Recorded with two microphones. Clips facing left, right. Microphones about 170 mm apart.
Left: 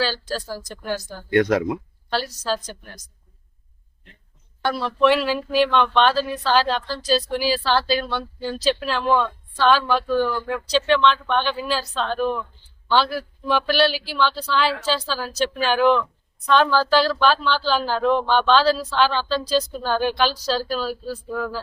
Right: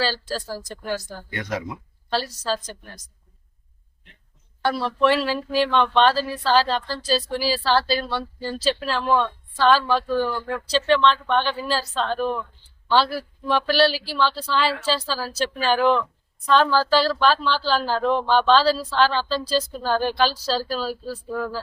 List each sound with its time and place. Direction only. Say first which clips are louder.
0.0 s speech: left 1 dB; 5° right (ahead or behind)
1.3 s speech: left 11 dB; 70° left (ahead or behind)
2.0 s speech: even; centre (ahead or behind)
4.6 s speech: left 1 dB; 5° right (ahead or behind)